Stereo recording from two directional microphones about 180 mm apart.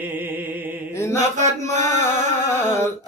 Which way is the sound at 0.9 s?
15° left (ahead or behind).